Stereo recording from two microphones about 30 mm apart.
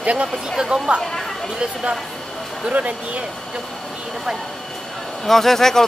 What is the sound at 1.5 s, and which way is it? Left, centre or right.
Speech, right.